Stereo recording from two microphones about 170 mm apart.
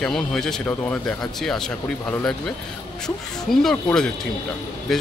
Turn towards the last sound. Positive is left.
turn(degrees=0)  # may be behind; listen again after turning